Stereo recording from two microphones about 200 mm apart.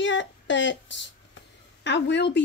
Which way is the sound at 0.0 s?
65° left (ahead or behind).